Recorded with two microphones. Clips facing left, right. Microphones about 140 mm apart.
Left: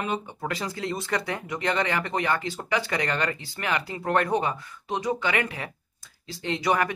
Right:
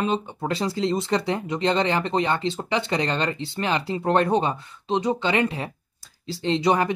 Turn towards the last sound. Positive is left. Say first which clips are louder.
# right 4 dB
turn(degrees=-25)  # may be behind; listen again after turning